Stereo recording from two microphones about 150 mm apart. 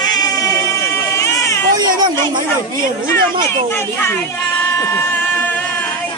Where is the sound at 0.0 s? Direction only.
25° left (ahead or behind).